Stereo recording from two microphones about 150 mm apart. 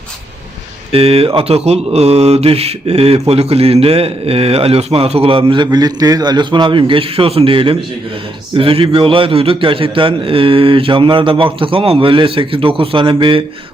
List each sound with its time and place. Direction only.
0.9 s mantra: 40° right (ahead or behind)